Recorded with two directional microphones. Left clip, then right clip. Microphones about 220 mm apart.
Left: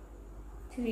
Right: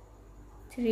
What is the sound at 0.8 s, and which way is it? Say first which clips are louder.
Speech: right 7 dB; 50° right (ahead or behind).